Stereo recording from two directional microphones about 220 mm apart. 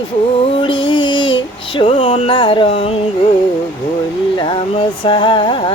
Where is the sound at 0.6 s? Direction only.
20° left (ahead or behind).